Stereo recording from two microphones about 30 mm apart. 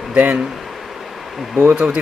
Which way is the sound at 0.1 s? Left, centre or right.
Right.